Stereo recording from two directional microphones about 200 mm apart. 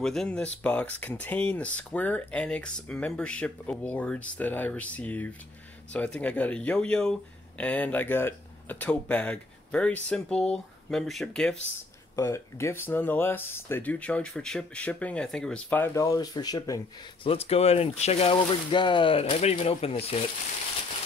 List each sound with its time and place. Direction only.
0.0 s speech: 5° left (ahead or behind)
12.2 s speech: 15° left (ahead or behind)
17.3 s speech: 30° left (ahead or behind)